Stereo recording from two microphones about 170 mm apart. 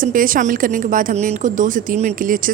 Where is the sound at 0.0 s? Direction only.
55° right (ahead or behind).